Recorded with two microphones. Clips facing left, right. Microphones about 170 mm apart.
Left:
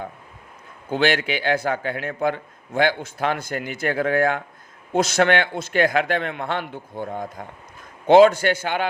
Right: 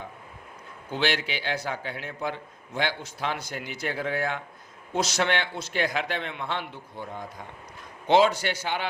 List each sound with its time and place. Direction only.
0.9 s a man's voice: 50° left (ahead or behind)